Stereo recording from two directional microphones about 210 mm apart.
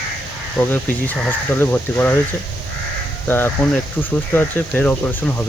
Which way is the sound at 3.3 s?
10° left (ahead or behind).